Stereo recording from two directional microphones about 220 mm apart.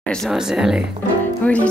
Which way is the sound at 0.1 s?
Centre (ahead or behind).